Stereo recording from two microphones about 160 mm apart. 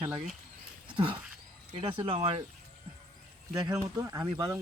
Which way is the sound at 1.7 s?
35° right (ahead or behind).